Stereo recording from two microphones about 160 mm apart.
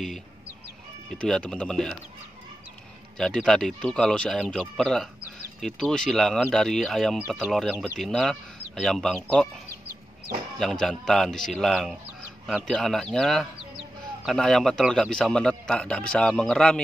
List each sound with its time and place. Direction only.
1.1 s speech: 5° left (ahead or behind)
3.2 s speech: 5° left (ahead or behind)
10.6 s speech: 5° left (ahead or behind)